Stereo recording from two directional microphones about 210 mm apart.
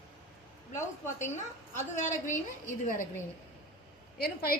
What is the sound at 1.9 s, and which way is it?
Speech, 35° left (ahead or behind).